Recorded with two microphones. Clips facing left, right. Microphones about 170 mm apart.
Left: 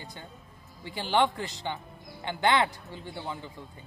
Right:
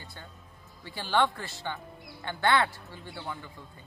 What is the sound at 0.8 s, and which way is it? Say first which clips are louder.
Speech: left 1 dB; 15° left (ahead or behind).